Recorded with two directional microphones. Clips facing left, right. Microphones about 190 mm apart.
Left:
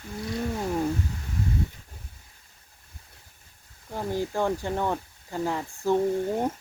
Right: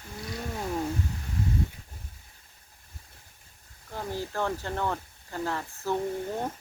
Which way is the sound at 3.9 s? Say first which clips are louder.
Left 5 dB; 15° left (ahead or behind).